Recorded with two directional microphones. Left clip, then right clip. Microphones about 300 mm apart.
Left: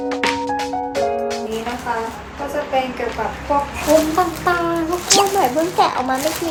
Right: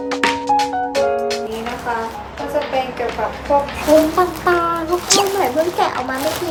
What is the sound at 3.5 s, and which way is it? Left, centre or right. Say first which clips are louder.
Speech: right 2 dB; centre.